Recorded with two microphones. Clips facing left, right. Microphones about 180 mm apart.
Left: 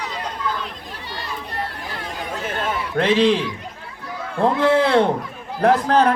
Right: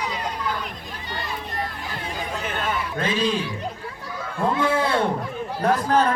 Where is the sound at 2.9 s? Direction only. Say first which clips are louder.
Left 9 dB; 75° left (ahead or behind).